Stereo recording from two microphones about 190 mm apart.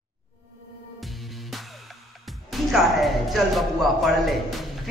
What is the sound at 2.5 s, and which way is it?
Speech, centre (ahead or behind).